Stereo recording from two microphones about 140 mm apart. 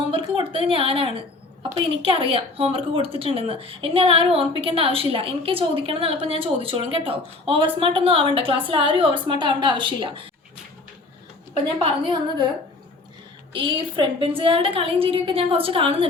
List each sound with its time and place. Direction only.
0.1 s speech: 40° right (ahead or behind)
11.8 s speech: 35° right (ahead or behind)
13.5 s speech: 35° right (ahead or behind)